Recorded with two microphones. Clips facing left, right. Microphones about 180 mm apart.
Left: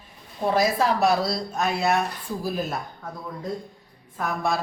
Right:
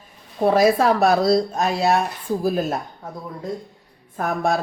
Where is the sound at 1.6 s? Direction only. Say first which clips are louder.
Right 4 dB; 35° right (ahead or behind).